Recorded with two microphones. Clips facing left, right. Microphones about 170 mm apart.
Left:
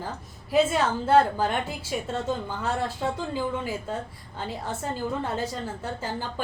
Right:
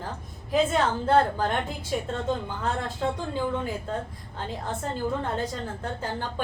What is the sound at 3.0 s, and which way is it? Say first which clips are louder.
Speech: even; 5° left (ahead or behind).